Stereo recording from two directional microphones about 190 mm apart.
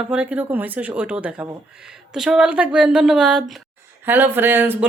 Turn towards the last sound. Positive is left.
turn(degrees=-10)  # may be behind; listen again after turning